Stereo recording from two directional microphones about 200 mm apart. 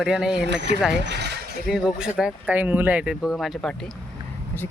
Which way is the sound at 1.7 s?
5° right (ahead or behind).